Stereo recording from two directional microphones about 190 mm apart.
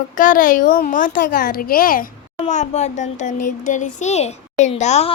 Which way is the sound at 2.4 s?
35° left (ahead or behind).